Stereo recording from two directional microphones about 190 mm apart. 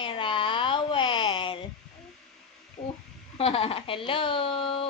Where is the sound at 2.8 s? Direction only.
30° left (ahead or behind).